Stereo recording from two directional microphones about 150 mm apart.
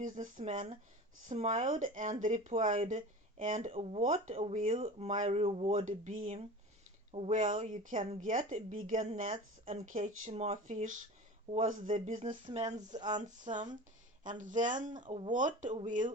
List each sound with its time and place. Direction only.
0.0 s speech: 60° right (ahead or behind)
3.7 s speech: 45° right (ahead or behind)
5.9 s speech: 60° right (ahead or behind)
7.1 s speech: 45° right (ahead or behind)
7.3 s speech: 55° right (ahead or behind)
12.3 s speech: 30° right (ahead or behind)
13.1 s speech: 55° right (ahead or behind)